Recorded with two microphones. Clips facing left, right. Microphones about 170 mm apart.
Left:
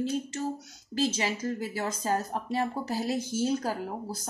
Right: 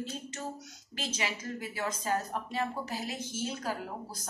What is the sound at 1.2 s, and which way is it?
A woman's voice, 35° left (ahead or behind).